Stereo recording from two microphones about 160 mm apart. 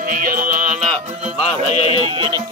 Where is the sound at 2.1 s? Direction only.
30° right (ahead or behind).